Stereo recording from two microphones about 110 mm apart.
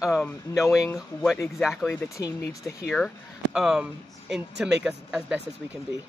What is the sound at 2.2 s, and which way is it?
Speech, 30° left (ahead or behind).